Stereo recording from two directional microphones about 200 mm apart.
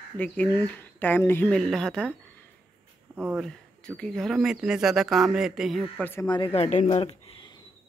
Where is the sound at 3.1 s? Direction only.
10° right (ahead or behind).